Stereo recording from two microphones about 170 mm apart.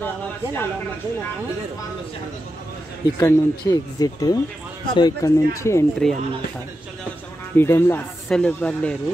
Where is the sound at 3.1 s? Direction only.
20° left (ahead or behind).